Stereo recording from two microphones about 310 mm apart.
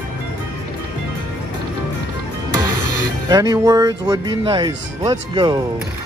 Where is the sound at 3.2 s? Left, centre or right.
Centre.